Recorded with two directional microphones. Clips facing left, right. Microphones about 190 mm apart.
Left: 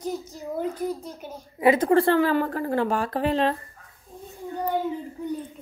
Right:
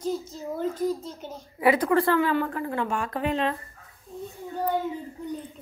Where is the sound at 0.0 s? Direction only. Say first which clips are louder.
Right 1 dB; 15° left (ahead or behind).